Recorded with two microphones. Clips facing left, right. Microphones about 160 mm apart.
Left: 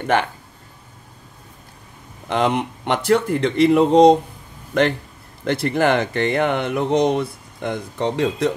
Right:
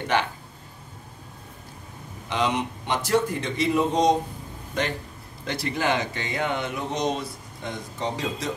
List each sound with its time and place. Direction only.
0.0 s speech: 55° left (ahead or behind)
2.2 s speech: 55° left (ahead or behind)
5.4 s speech: 60° left (ahead or behind)